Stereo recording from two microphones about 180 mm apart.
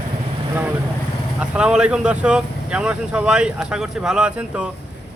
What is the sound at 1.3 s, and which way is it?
Speech, 5° right (ahead or behind).